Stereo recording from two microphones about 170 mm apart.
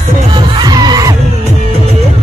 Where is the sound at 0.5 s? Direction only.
25° right (ahead or behind).